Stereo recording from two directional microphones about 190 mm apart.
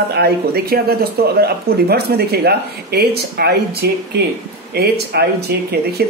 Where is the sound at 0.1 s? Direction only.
55° right (ahead or behind).